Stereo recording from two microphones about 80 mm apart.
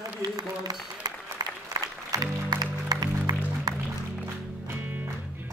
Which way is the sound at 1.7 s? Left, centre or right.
Right.